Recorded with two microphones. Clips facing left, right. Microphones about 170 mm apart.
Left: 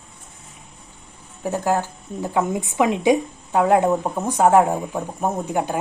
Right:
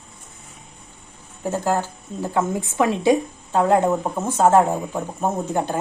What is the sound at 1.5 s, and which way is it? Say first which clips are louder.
Speech: left 1 dB; 15° left (ahead or behind).